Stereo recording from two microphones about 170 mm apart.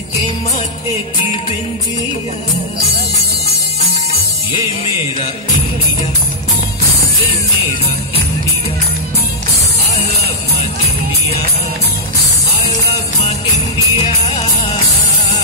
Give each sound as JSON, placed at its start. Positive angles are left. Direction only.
{"t": 13.9, "sound": "music", "side_deg": 40}